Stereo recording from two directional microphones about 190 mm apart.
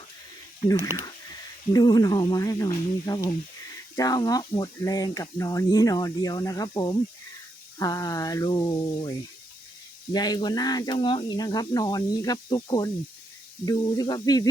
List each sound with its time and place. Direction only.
0.6 s speech: 20° left (ahead or behind)